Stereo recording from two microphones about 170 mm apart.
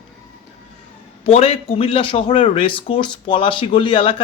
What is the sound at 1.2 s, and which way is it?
Speech, 35° left (ahead or behind).